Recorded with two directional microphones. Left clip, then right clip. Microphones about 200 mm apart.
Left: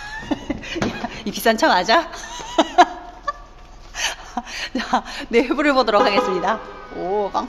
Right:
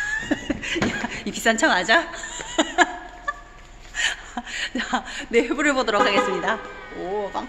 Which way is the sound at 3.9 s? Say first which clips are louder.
Even; 30° left (ahead or behind).